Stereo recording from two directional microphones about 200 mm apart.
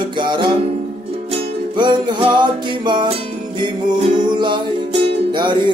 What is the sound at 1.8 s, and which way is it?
Music, 20° right (ahead or behind).